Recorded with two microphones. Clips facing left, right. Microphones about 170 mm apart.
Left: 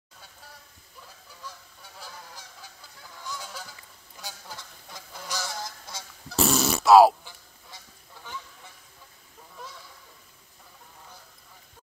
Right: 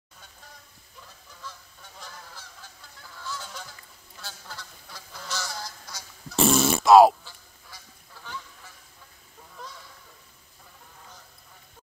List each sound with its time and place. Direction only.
1.4 s goose: 10° left (ahead or behind)
3.3 s honk: 10° left (ahead or behind)
4.2 s goose: 15° left (ahead or behind)
6.3 s a sound: centre (ahead or behind)
7.2 s goose: 15° left (ahead or behind)